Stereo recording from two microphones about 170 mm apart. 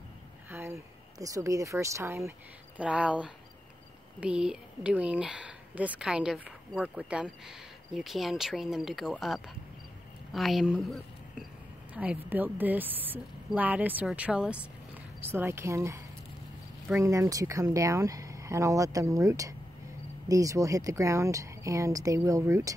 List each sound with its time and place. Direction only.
0.5 s a sound: 15° right (ahead or behind)
1.2 s a woman's voice: 20° right (ahead or behind)
17.0 s speech: 20° right (ahead or behind)